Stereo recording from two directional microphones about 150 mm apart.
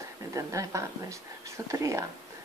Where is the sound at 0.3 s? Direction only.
20° right (ahead or behind).